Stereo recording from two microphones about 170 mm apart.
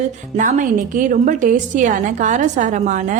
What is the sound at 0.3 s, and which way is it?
A woman's voice, 50° right (ahead or behind).